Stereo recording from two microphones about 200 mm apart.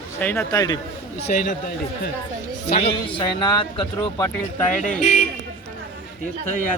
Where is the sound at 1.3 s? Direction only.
45° left (ahead or behind).